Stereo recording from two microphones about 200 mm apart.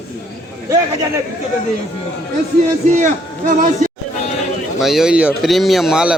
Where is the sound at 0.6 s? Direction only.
15° right (ahead or behind).